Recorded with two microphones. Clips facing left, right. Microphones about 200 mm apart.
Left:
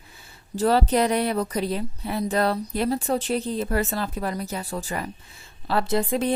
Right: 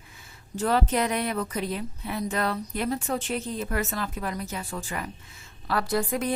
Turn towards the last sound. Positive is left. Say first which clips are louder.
# left 3 dB
turn(degrees=25)  # may be behind; listen again after turning